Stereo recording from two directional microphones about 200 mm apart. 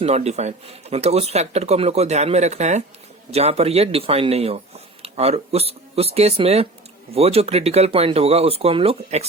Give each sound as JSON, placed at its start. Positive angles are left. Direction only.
{"t": 0.0, "sound": "speech", "side_deg": -35}